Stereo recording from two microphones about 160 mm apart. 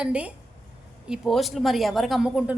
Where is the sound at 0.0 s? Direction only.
5° right (ahead or behind).